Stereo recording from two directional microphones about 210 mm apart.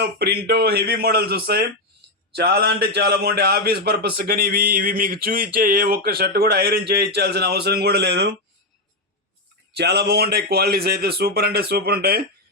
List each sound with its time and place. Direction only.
0.0 s speech: 50° right (ahead or behind)
9.7 s speech: 50° right (ahead or behind)